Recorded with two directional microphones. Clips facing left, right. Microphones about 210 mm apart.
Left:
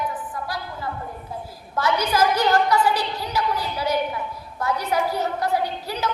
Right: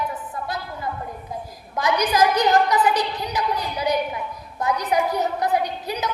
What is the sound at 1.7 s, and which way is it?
A woman's voice, 15° right (ahead or behind).